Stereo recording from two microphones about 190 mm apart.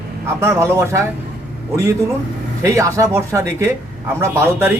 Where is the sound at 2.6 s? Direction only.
15° right (ahead or behind).